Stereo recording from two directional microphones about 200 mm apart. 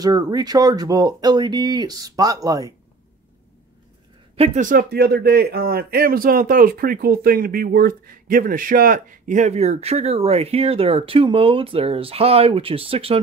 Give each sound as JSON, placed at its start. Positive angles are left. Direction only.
{"t": 0.0, "sound": "speech", "side_deg": -20}
{"t": 4.4, "sound": "a man's voice", "side_deg": -40}